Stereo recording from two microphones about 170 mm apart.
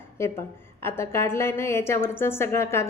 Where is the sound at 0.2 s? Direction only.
15° left (ahead or behind).